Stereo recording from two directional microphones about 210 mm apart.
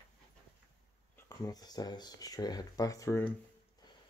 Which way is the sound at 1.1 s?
15° left (ahead or behind).